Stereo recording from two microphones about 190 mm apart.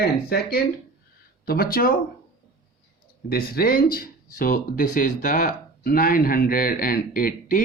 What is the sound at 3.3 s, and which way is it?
Speech, 55° left (ahead or behind).